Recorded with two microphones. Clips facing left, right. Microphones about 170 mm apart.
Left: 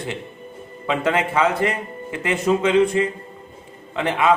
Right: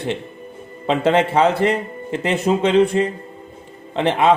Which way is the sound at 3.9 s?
30° right (ahead or behind).